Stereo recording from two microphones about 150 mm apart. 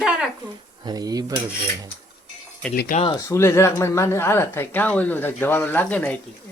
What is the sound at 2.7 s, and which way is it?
Speech, 75° left (ahead or behind).